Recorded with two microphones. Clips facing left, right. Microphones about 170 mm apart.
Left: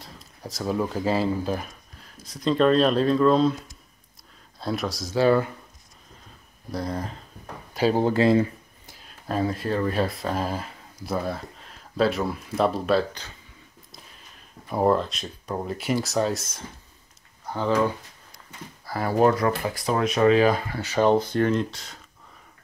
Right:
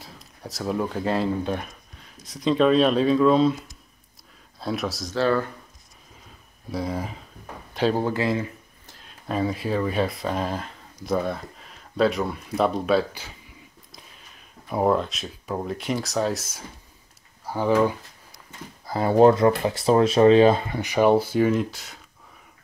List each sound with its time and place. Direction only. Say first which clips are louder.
0.0 s speech: even; centre (ahead or behind)
5.1 s speech: left 3 dB; 10° left (ahead or behind)
6.7 s speech: right 1 dB; 5° right (ahead or behind)
8.0 s speech: left 5 dB; 30° left (ahead or behind)
8.8 s speech: even; 5° left (ahead or behind)
14.7 s speech: even; centre (ahead or behind)
17.5 s speech: right 2 dB; 15° right (ahead or behind)
18.9 s speech: right 4 dB; 25° right (ahead or behind); by 21.9 s centre (ahead or behind)